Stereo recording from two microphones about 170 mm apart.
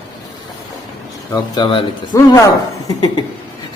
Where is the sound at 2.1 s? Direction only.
20° left (ahead or behind).